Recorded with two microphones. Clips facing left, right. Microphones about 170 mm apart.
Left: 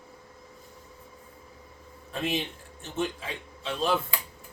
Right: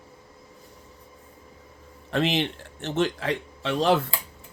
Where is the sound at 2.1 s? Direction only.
80° right.